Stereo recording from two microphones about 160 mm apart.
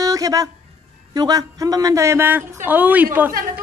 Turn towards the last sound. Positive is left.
turn(degrees=-10)  # may be behind; listen again after turning